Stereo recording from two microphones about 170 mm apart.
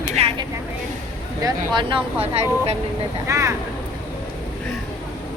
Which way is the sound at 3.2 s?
15° right (ahead or behind).